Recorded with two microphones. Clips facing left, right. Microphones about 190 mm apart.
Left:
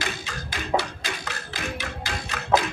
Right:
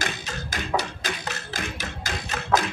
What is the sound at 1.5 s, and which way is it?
Music, 45° right (ahead or behind).